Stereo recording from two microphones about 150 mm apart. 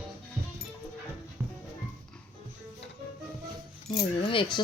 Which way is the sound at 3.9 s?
35° left (ahead or behind).